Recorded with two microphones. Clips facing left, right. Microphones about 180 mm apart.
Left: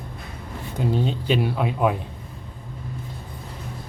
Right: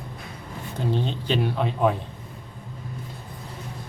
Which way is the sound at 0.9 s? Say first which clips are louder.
Left 3 dB; 5° left (ahead or behind).